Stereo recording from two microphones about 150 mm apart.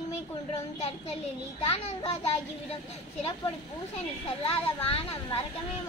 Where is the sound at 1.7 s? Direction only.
45° left (ahead or behind).